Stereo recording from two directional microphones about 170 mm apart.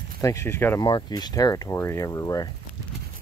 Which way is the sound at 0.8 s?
25° left (ahead or behind).